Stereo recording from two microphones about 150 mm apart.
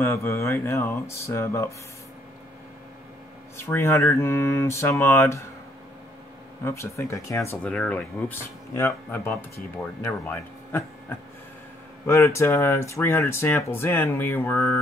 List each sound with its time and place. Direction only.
0.0 s speech: 15° left (ahead or behind)
3.5 s speech: 15° left (ahead or behind)
6.6 s speech: 20° left (ahead or behind)